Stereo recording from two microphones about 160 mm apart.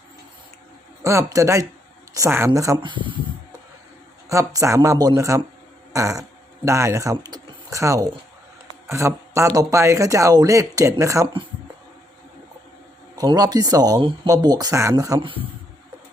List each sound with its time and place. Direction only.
1.0 s speech: 20° right (ahead or behind)
4.3 s speech: 20° right (ahead or behind)
13.1 s speech: 25° right (ahead or behind)